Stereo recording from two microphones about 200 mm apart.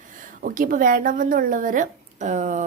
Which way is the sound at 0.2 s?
40° right (ahead or behind).